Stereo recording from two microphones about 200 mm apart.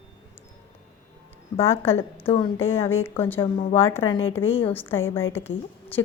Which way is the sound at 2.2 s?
30° left (ahead or behind).